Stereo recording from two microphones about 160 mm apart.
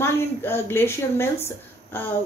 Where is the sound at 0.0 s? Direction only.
15° left (ahead or behind).